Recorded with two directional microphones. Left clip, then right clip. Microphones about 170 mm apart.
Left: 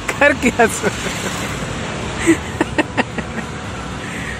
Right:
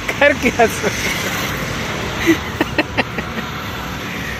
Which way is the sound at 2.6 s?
15° left (ahead or behind).